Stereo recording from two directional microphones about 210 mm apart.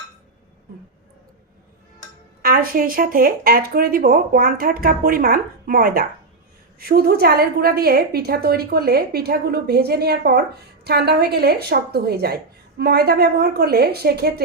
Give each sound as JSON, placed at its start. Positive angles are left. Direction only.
{"t": 2.4, "sound": "speech", "side_deg": -45}